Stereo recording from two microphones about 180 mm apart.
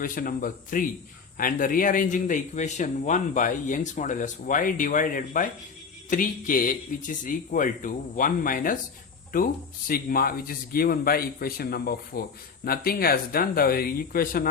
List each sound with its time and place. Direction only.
0.0 s speech: 50° left (ahead or behind)